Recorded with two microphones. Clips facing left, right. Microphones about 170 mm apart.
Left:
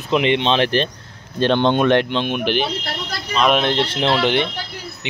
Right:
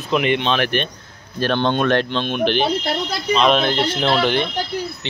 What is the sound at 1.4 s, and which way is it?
Speech, 20° left (ahead or behind).